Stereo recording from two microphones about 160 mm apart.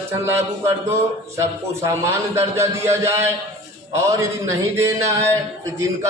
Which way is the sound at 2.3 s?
15° right (ahead or behind).